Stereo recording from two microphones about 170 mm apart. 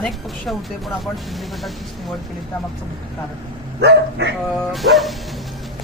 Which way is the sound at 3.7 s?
85° right.